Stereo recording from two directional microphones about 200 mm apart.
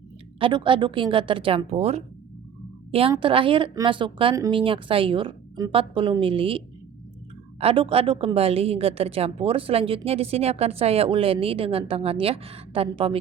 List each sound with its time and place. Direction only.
0.3 s a woman's voice: 25° right (ahead or behind)
7.6 s a woman's voice: 30° right (ahead or behind)